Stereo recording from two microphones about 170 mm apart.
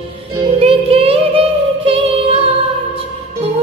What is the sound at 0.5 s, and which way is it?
Music, 35° right (ahead or behind).